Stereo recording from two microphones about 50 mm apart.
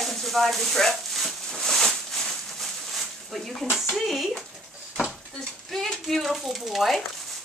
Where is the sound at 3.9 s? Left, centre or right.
Centre.